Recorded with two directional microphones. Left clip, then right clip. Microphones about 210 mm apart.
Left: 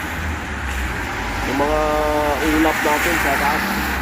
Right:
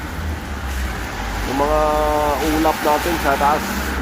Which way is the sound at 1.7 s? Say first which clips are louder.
Right 3 dB; centre (ahead or behind).